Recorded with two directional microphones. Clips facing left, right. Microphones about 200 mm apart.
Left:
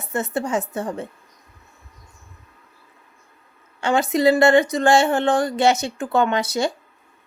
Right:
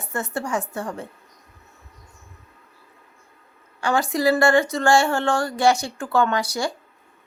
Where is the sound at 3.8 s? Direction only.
20° left (ahead or behind).